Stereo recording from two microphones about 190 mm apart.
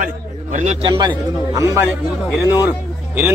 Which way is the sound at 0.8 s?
20° right (ahead or behind).